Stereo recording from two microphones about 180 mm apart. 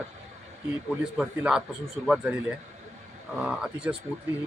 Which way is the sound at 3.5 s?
5° right (ahead or behind).